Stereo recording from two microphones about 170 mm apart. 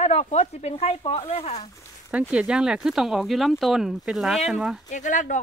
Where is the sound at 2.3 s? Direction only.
5° right (ahead or behind).